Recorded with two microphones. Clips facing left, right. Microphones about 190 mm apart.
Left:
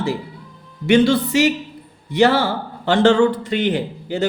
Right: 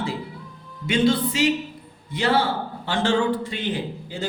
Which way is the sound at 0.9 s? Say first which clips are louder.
Left 6 dB; 75° left (ahead or behind).